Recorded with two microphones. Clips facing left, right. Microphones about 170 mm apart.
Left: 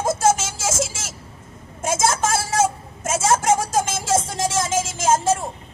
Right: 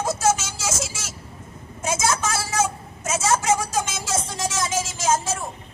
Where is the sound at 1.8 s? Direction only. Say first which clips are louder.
Left 3 dB; 50° left (ahead or behind).